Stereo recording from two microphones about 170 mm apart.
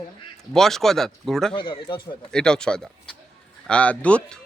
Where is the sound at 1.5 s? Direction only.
30° left (ahead or behind).